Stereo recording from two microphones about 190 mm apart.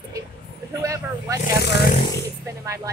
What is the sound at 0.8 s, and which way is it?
Speech, 15° right (ahead or behind).